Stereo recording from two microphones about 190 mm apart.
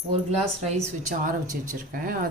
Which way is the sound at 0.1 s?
35° right (ahead or behind).